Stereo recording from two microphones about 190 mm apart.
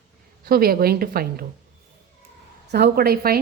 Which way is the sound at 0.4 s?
50° right (ahead or behind).